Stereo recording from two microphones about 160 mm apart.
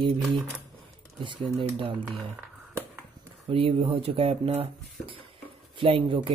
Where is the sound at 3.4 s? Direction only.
35° right (ahead or behind).